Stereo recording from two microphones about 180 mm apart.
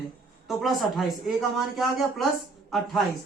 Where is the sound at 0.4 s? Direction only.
Centre (ahead or behind).